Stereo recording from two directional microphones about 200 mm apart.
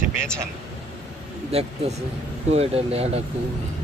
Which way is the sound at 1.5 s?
30° right (ahead or behind).